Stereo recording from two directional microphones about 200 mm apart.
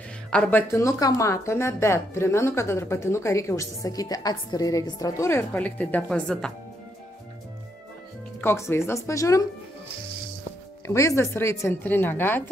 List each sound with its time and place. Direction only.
0.3 s speech: 5° left (ahead or behind)
8.4 s speech: 10° left (ahead or behind)
10.9 s speech: 15° left (ahead or behind)